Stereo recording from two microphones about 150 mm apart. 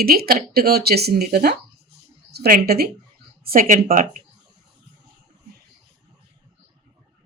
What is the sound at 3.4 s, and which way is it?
Speech, 70° right (ahead or behind).